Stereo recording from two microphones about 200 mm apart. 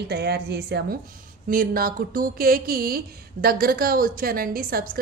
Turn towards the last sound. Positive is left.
turn(degrees=-45)  # may be behind; listen again after turning